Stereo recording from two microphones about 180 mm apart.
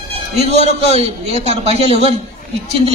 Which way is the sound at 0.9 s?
35° right (ahead or behind).